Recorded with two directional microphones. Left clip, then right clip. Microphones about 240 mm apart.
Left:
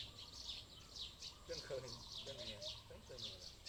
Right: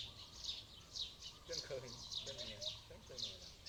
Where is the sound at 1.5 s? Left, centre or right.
Right.